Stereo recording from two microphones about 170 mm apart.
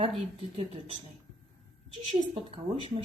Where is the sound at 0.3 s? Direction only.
35° right (ahead or behind).